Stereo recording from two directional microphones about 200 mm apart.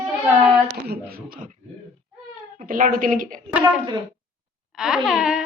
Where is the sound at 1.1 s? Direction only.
45° right (ahead or behind).